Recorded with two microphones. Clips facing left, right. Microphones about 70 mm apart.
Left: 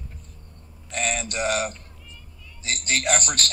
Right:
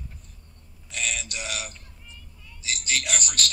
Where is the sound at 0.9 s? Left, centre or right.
Left.